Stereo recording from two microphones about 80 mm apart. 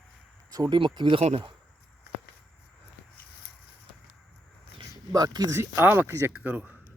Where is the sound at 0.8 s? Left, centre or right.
Right.